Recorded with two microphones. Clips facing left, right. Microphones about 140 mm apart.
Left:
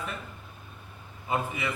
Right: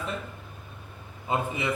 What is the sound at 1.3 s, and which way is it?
Speech, 25° right (ahead or behind).